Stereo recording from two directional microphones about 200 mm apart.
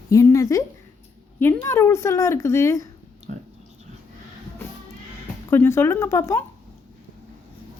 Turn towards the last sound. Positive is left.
turn(degrees=15)  # may be behind; listen again after turning